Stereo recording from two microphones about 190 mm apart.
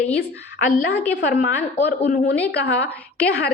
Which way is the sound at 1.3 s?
50° left (ahead or behind).